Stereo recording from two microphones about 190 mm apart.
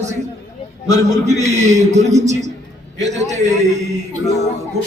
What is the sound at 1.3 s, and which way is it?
A man's voice, 35° right (ahead or behind).